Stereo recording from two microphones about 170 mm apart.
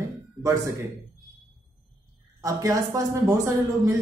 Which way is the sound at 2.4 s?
20° right (ahead or behind).